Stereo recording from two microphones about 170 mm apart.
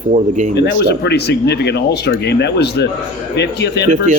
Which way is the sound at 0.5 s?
90° left.